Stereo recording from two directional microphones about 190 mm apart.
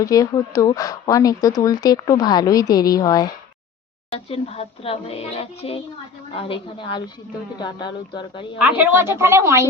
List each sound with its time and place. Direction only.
0.0 s speech: 20° left (ahead or behind)
4.1 s speech: 30° left (ahead or behind)
8.5 s a woman's voice: 10° right (ahead or behind)